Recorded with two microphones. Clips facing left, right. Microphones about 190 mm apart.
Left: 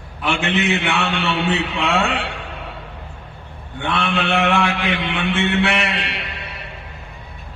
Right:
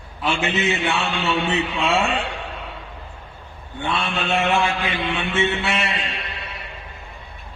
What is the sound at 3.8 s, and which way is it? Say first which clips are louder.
A man's voice: left 3 dB; 70° left (ahead or behind).